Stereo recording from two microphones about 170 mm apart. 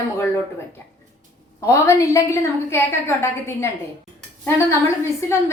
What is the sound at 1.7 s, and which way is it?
A woman's voice, 15° left (ahead or behind).